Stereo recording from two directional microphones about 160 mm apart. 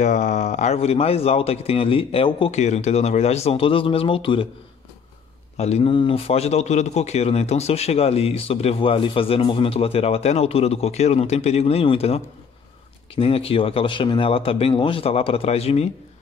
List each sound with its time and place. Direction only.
0.0 s speech: 50° left (ahead or behind); by 2.5 s 30° left (ahead or behind)
2.5 s speech: 45° left (ahead or behind)
5.6 s speech: 40° left (ahead or behind)